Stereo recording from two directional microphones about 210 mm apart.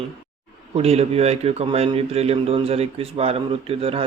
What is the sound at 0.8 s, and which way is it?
Speech, 30° right (ahead or behind).